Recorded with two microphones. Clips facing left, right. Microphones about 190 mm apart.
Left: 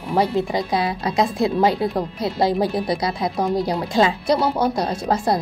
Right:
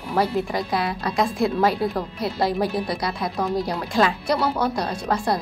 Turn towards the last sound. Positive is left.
turn(degrees=25)  # may be behind; listen again after turning